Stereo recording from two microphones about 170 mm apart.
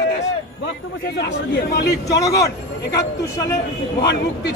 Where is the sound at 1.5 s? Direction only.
80° left.